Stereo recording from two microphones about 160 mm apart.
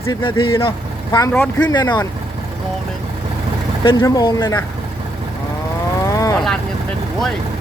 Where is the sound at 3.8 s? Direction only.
30° left (ahead or behind).